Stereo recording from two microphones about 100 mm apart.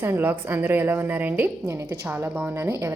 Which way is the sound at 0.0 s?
20° right (ahead or behind).